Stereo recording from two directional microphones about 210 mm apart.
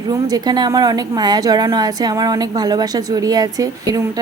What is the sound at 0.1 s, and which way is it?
A woman's voice, 15° right (ahead or behind).